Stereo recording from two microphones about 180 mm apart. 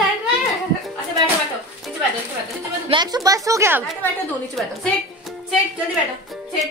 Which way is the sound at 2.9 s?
25° right (ahead or behind).